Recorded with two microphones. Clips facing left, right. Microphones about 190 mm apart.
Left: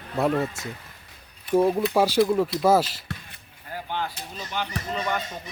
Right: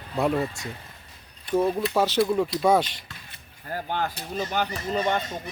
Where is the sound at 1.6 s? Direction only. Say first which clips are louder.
Left 2 dB; 15° left (ahead or behind).